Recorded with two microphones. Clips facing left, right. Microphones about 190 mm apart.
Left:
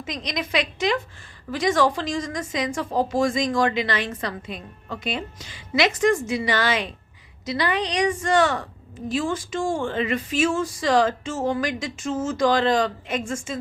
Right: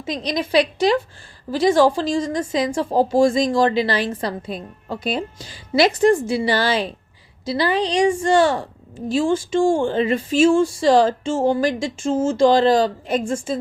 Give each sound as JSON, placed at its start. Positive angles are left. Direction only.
{"t": 0.0, "sound": "a woman's voice", "side_deg": -30}